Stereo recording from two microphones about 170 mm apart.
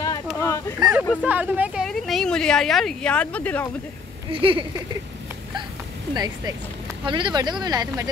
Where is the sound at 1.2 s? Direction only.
10° right (ahead or behind).